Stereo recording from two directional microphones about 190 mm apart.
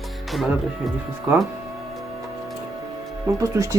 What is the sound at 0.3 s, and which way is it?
Speech, centre (ahead or behind).